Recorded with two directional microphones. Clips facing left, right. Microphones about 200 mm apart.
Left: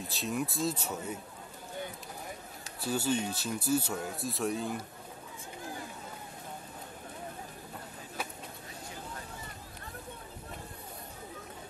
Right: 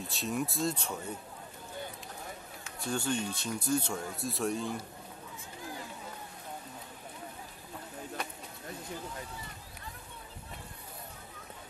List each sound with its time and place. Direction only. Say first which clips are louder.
0.1 s speech: even; centre (ahead or behind)
2.8 s speech: left 2 dB; 5° left (ahead or behind)
8.2 s a sound: left 2 dB; 5° left (ahead or behind)